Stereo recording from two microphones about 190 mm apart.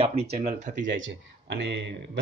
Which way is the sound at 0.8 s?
70° right (ahead or behind).